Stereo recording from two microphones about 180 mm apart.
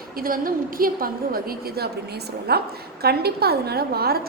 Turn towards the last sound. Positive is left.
turn(degrees=-60)  # may be behind; listen again after turning